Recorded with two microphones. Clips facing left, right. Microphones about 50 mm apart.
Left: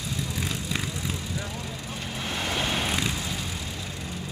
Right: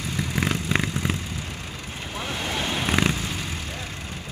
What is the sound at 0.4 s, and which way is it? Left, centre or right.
Vehicle, right.